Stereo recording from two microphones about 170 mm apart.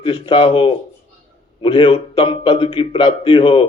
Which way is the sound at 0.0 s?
30° left (ahead or behind).